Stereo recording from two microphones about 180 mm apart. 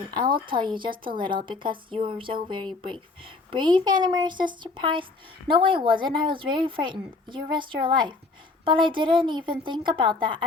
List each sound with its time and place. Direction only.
0.1 s a woman's voice: 25° right (ahead or behind)